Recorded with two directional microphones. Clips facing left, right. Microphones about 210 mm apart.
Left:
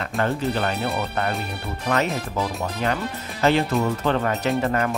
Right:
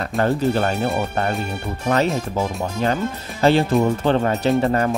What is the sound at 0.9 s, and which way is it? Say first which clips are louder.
Speech: right 3 dB; 30° right (ahead or behind).